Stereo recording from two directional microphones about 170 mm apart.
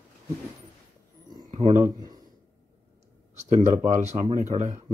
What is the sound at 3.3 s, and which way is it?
Speech, 40° right (ahead or behind).